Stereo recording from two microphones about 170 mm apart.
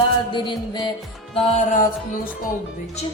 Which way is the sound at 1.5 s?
45° left (ahead or behind).